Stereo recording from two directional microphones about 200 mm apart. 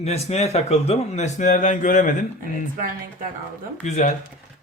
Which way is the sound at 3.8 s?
35° left (ahead or behind).